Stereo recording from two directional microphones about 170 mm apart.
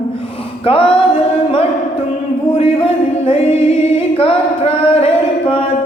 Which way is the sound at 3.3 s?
35° left (ahead or behind).